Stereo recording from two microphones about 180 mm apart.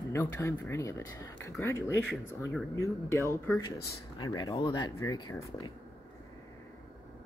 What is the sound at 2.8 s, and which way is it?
Speech, 15° left (ahead or behind).